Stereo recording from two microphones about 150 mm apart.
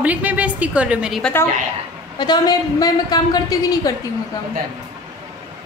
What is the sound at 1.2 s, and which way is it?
Speech, 15° left (ahead or behind).